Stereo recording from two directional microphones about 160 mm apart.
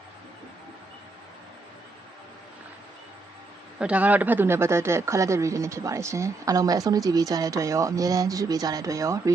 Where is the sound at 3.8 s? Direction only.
10° right (ahead or behind).